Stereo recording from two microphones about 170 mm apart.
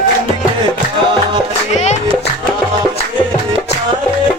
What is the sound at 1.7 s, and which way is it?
Music, 40° left (ahead or behind).